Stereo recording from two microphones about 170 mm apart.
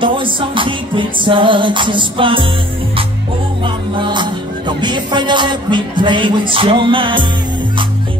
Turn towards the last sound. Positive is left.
turn(degrees=-30)  # may be behind; listen again after turning